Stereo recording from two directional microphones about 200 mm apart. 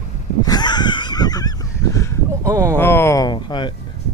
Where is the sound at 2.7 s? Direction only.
10° left (ahead or behind).